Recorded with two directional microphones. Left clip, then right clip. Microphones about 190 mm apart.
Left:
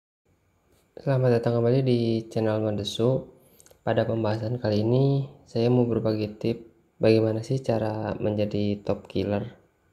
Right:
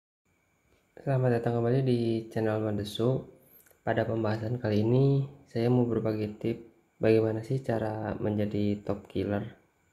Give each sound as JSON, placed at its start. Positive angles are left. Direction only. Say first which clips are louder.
{"t": 0.9, "sound": "speech", "louder": "left 5 dB", "side_deg": 20}